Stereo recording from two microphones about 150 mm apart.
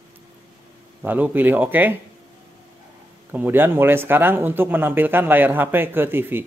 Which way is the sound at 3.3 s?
15° right (ahead or behind).